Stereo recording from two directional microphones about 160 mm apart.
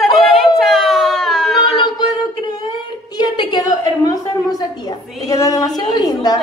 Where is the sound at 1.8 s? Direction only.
25° left (ahead or behind).